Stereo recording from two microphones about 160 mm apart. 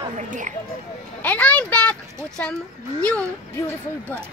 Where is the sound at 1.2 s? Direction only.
10° left (ahead or behind).